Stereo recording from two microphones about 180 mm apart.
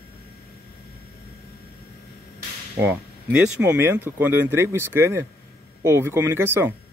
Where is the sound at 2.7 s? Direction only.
10° right (ahead or behind).